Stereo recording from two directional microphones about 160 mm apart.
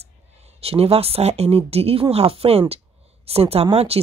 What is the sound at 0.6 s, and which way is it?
Speech, 35° right (ahead or behind).